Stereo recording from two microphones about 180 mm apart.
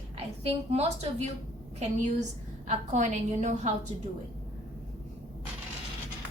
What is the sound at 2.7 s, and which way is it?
A woman's voice, 40° right (ahead or behind).